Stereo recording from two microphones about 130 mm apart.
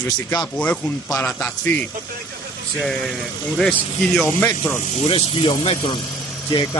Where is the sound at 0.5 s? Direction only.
10° left (ahead or behind).